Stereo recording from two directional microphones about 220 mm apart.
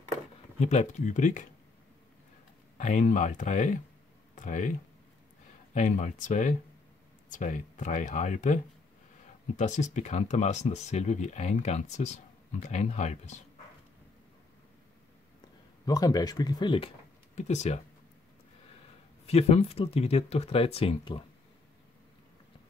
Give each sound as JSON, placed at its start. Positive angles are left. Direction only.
{"t": 0.6, "sound": "speech", "side_deg": 30}
{"t": 2.8, "sound": "speech", "side_deg": 35}
{"t": 5.8, "sound": "speech", "side_deg": 35}
{"t": 9.6, "sound": "speech", "side_deg": 35}
{"t": 15.8, "sound": "speech", "side_deg": 15}
{"t": 19.2, "sound": "speech", "side_deg": 30}